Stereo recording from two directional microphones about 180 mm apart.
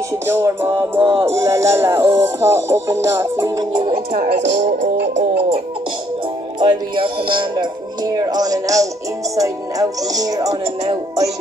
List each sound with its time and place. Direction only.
0.3 s music: 15° right (ahead or behind)
4.1 s music: 60° right (ahead or behind)
6.6 s music: 25° right (ahead or behind)